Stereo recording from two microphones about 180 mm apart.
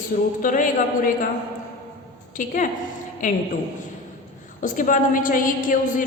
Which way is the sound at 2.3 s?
45° left (ahead or behind).